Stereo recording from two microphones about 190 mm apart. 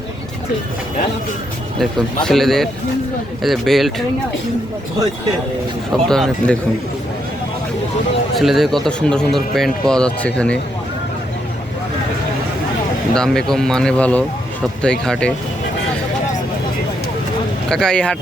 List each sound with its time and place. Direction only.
1.8 s a man's voice: centre (ahead or behind)
5.9 s a man's voice: centre (ahead or behind)
8.4 s a man's voice: centre (ahead or behind)
13.1 s a man's voice: 5° left (ahead or behind)
17.7 s a man's voice: 5° left (ahead or behind)